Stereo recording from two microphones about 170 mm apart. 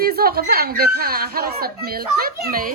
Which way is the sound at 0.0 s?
65° right (ahead or behind).